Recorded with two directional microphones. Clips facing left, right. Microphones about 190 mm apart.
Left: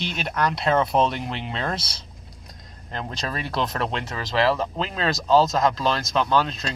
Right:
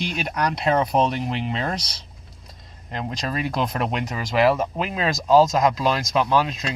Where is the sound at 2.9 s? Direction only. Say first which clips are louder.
Right 3 dB; 10° right (ahead or behind).